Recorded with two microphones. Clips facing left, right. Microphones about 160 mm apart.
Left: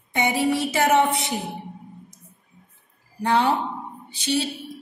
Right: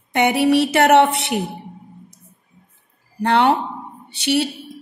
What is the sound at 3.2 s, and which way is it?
Speech, 65° right (ahead or behind).